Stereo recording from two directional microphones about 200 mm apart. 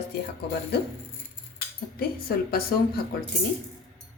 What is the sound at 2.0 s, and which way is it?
A woman's voice, 50° left (ahead or behind).